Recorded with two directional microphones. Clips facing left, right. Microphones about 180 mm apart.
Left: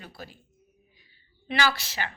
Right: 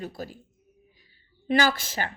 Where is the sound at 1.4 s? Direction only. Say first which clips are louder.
Right 4 dB; 45° right (ahead or behind).